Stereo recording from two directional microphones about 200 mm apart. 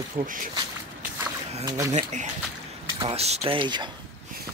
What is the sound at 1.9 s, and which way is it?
Speech, 35° right (ahead or behind).